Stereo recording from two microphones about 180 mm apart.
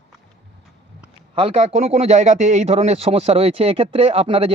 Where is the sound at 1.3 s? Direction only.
35° right (ahead or behind).